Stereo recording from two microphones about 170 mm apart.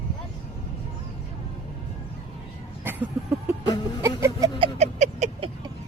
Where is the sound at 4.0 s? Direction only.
20° right (ahead or behind).